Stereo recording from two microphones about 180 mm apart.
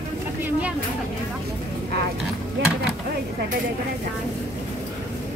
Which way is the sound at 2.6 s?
85° right.